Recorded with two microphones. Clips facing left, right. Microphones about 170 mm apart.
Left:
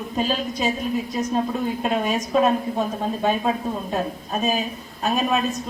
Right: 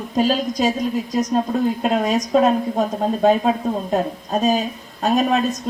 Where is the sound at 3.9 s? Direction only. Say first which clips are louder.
Right 6 dB; 35° right (ahead or behind).